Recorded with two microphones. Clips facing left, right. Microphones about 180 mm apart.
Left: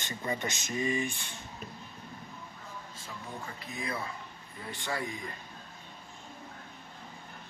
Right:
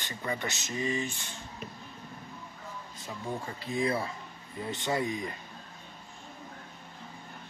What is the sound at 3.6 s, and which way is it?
Speech, 30° right (ahead or behind).